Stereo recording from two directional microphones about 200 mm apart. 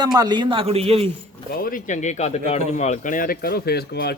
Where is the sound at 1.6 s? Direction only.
40° left (ahead or behind).